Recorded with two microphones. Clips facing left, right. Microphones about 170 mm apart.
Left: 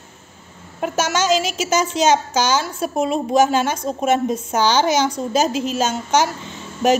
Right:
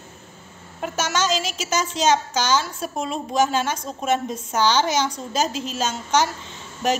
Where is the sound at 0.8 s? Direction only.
5° left (ahead or behind).